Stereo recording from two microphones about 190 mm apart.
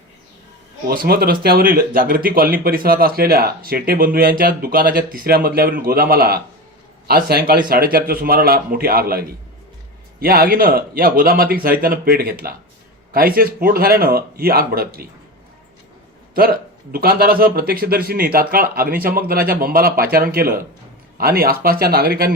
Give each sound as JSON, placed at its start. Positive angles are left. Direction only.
{"t": 0.9, "sound": "speech", "side_deg": -55}
{"t": 16.3, "sound": "speech", "side_deg": -50}